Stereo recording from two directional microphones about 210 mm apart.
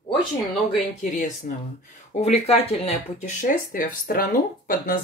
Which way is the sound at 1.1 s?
35° left (ahead or behind).